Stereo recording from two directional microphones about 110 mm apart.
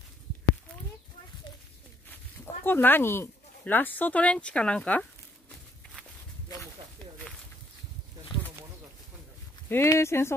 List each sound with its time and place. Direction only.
2.0 s speech: 20° left (ahead or behind)
9.7 s speech: 25° left (ahead or behind)